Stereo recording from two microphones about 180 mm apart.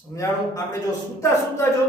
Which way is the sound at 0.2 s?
20° left (ahead or behind).